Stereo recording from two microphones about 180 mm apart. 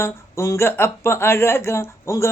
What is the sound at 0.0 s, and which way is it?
Speech, 15° left (ahead or behind).